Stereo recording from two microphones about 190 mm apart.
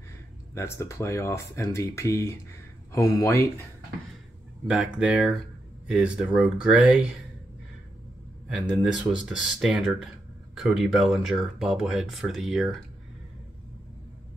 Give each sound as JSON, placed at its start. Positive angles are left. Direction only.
{"t": 0.6, "sound": "speech", "side_deg": 15}
{"t": 4.6, "sound": "speech", "side_deg": -5}
{"t": 8.5, "sound": "speech", "side_deg": -5}